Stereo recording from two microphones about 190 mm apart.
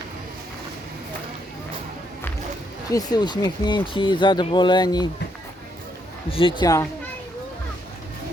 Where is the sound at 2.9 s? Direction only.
20° left (ahead or behind).